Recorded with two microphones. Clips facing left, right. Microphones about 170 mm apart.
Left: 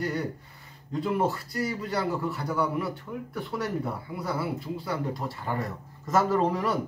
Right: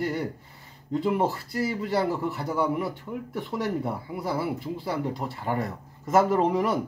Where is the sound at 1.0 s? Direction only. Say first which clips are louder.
Right 1 dB; 25° right (ahead or behind).